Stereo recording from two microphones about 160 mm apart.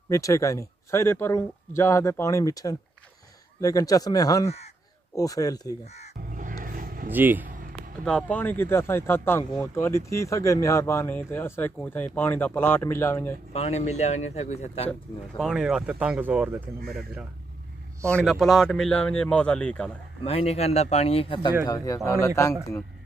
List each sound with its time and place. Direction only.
0.1 s speech: 20° left (ahead or behind)
6.3 s vehicle: 55° right (ahead or behind)
7.1 s speech: 10° right (ahead or behind)
8.0 s speech: 5° left (ahead or behind)
13.5 s speech: 40° left (ahead or behind)
14.9 s speech: centre (ahead or behind)
18.1 s speech: centre (ahead or behind)
20.2 s speech: 40° left (ahead or behind)
21.6 s speech: 20° left (ahead or behind)